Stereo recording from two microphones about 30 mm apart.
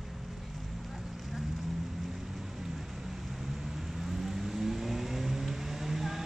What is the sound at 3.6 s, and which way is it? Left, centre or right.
Vehicle, centre.